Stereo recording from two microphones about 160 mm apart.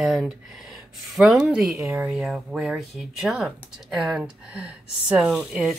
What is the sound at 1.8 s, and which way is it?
Speech, 15° right (ahead or behind).